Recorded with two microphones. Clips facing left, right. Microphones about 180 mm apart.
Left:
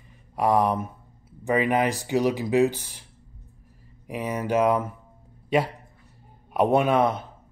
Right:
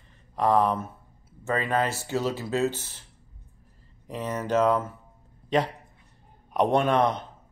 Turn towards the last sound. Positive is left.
turn(degrees=5)  # may be behind; listen again after turning